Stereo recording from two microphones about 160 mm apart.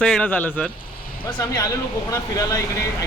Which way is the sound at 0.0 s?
5° left (ahead or behind).